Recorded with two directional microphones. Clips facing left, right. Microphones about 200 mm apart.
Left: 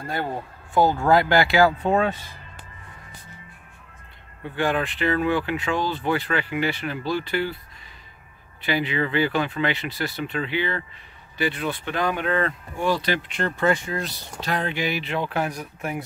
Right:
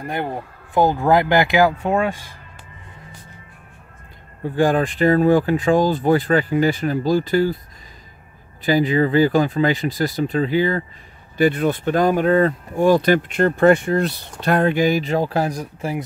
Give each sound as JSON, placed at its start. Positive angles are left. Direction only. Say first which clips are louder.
{"t": 0.0, "sound": "speech", "louder": "right 3 dB", "side_deg": -15}
{"t": 4.4, "sound": "speech", "louder": "right 7 dB", "side_deg": -40}
{"t": 8.6, "sound": "speech", "louder": "right 8 dB", "side_deg": -40}